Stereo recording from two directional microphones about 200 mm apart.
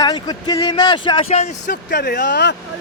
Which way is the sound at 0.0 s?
20° left (ahead or behind).